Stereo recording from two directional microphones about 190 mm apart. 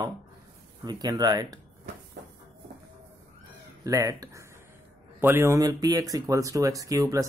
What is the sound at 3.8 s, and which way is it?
Speech, 15° right (ahead or behind).